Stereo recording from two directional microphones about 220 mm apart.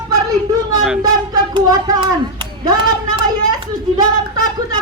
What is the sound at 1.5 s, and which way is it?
Speech, 20° right (ahead or behind).